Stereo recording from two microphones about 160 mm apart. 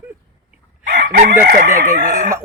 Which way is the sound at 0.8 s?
90° right.